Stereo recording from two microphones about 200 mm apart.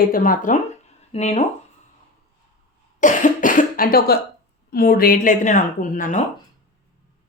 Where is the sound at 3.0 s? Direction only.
40° left (ahead or behind).